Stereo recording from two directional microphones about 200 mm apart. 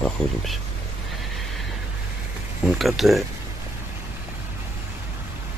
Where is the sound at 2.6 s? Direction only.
Centre (ahead or behind).